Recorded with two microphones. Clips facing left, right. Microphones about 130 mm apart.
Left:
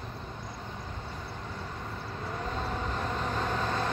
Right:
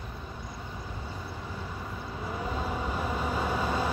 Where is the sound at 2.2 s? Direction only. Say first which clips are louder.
Right 2 dB; 10° right (ahead or behind).